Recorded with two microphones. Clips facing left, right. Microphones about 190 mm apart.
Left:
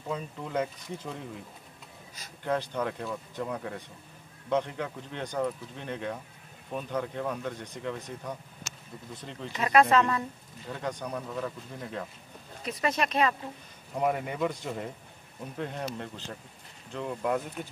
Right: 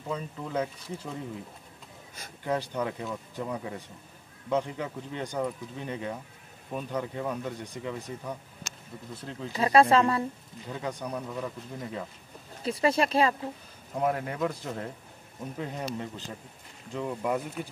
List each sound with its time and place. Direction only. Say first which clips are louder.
0.1 s speech: even; centre (ahead or behind)
2.4 s speech: even; 10° right (ahead or behind)
9.5 s speech: right 2 dB; 30° right (ahead or behind)
10.7 s speech: even; 10° right (ahead or behind)
12.6 s speech: right 4 dB; 30° right (ahead or behind)
13.9 s speech: even; centre (ahead or behind)